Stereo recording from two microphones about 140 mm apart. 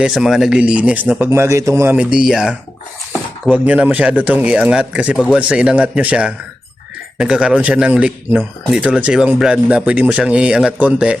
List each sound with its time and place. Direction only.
0.0 s speech: 5° right (ahead or behind)
1.3 s speech: 20° right (ahead or behind)